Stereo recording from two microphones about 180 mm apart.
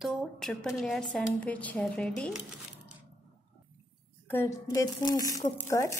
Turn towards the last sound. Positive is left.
turn(degrees=15)  # may be behind; listen again after turning